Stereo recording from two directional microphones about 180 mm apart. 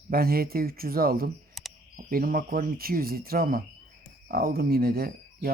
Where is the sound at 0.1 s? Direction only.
55° right (ahead or behind).